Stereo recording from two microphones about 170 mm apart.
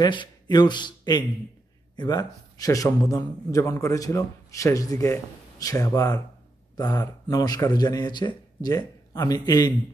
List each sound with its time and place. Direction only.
0.0 s a man's voice: 25° left (ahead or behind)